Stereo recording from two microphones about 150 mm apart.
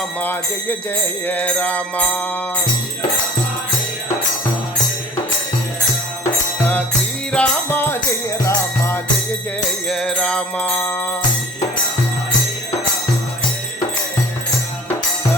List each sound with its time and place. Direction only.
0.2 s music: 10° left (ahead or behind)
7.3 s music: 15° left (ahead or behind)
9.9 s music: 5° left (ahead or behind)